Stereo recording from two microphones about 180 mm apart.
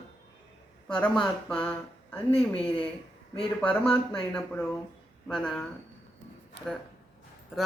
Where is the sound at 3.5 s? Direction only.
5° left (ahead or behind).